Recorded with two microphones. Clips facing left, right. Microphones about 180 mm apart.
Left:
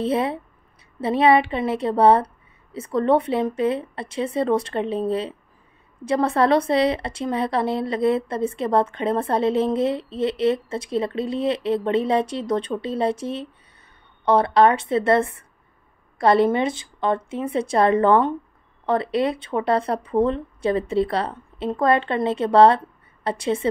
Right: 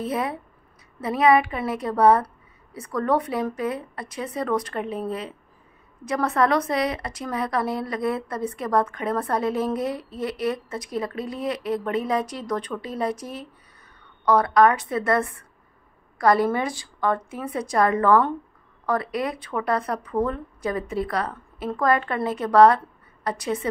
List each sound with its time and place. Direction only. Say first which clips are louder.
0.0 s speech: left 5 dB; 25° left (ahead or behind)